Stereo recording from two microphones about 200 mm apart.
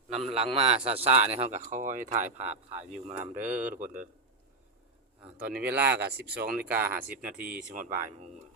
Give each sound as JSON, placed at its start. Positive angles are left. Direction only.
{"t": 0.3, "sound": "a man's voice", "side_deg": -25}
{"t": 3.3, "sound": "speech", "side_deg": -10}
{"t": 3.7, "sound": "speech", "side_deg": -40}
{"t": 5.2, "sound": "speech", "side_deg": -10}
{"t": 6.2, "sound": "speech", "side_deg": -50}
{"t": 6.6, "sound": "speech", "side_deg": -10}
{"t": 7.7, "sound": "speech", "side_deg": -45}